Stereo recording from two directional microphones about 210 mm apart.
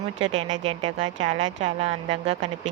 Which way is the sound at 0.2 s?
30° right (ahead or behind).